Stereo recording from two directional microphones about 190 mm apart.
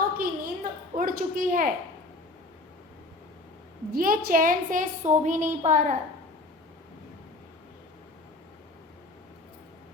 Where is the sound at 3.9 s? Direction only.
50° right (ahead or behind).